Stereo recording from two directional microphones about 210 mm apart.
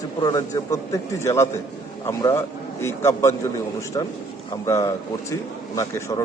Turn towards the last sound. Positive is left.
turn(degrees=15)  # may be behind; listen again after turning